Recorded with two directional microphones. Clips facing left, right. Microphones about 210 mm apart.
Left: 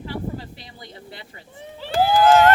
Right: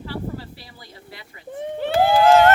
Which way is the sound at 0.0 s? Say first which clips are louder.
Even; 20° left (ahead or behind).